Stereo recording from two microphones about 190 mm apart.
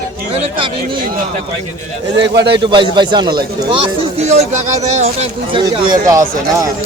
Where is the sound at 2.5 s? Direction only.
25° right (ahead or behind).